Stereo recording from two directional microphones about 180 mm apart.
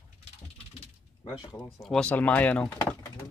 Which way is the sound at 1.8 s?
5° left (ahead or behind).